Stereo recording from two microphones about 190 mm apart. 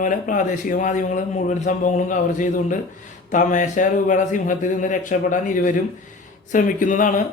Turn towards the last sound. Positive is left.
turn(degrees=45)  # may be behind; listen again after turning